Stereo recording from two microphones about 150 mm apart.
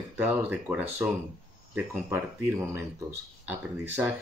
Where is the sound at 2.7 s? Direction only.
15° right (ahead or behind).